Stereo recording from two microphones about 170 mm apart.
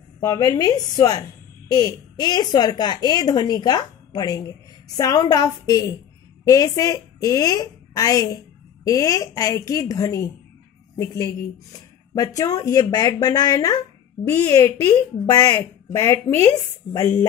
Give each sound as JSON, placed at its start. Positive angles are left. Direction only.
{"t": 0.2, "sound": "speech", "side_deg": 20}